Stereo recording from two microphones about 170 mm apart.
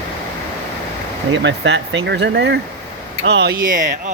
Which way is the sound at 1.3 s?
90° right.